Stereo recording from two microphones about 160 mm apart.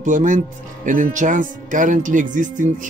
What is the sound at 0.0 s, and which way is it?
Speech, 55° right (ahead or behind).